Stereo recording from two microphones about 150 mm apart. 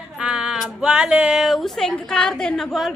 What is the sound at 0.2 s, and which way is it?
Music, 5° right (ahead or behind).